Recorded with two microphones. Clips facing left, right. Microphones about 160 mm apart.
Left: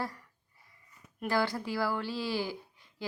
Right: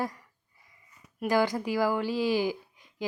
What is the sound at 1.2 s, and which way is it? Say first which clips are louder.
Speech: right 5 dB; 15° right (ahead or behind).